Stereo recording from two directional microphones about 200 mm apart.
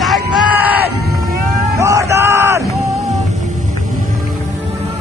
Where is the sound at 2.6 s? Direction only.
Centre (ahead or behind).